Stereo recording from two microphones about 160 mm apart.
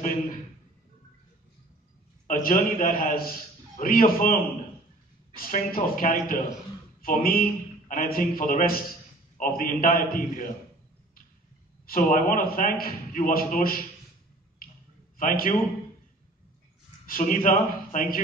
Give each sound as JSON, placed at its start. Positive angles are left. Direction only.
{"t": 2.2, "sound": "a man's voice", "side_deg": 55}
{"t": 5.3, "sound": "a man's voice", "side_deg": 65}
{"t": 11.8, "sound": "a man's voice", "side_deg": 60}
{"t": 15.1, "sound": "a man's voice", "side_deg": 60}
{"t": 17.0, "sound": "a man's voice", "side_deg": 60}